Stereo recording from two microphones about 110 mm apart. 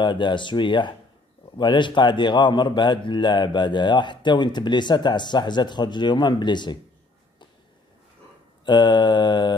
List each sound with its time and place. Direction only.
0.0 s a man's voice: 45° left (ahead or behind)
8.6 s a man's voice: 45° left (ahead or behind)